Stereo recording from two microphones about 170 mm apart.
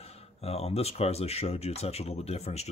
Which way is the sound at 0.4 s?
35° left (ahead or behind).